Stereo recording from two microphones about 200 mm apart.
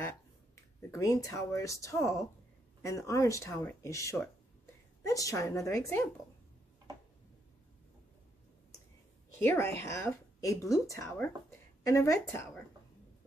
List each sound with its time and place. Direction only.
0.9 s speech: 15° left (ahead or behind)
9.4 s speech: 10° left (ahead or behind)